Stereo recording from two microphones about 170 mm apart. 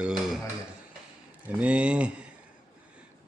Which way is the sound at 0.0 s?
5° right (ahead or behind).